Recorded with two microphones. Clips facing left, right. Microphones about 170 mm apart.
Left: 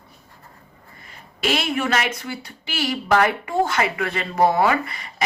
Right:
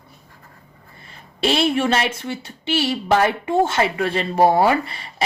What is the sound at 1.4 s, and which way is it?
A woman's voice, 30° right (ahead or behind).